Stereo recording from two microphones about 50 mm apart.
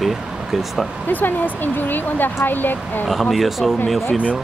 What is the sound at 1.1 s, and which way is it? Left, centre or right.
Speech, left.